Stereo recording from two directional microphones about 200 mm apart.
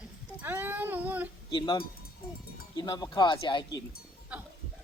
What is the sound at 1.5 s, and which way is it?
Speech, 25° left (ahead or behind).